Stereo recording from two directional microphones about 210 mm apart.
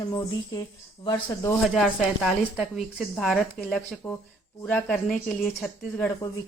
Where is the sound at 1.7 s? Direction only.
Centre (ahead or behind).